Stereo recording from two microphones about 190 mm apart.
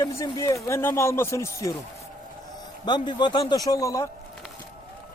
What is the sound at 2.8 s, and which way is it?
A man's voice, 25° left (ahead or behind).